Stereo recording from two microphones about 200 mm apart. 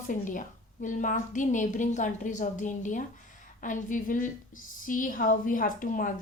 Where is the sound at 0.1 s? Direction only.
40° left (ahead or behind).